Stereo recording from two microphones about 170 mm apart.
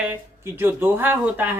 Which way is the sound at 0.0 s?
10° right (ahead or behind).